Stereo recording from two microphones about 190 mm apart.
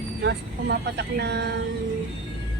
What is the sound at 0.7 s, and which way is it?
Speech, 60° right (ahead or behind).